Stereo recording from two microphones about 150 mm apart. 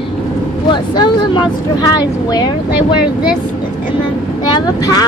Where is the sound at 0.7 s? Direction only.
30° left (ahead or behind).